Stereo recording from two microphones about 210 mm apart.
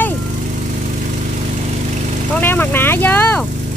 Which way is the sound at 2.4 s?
10° left (ahead or behind).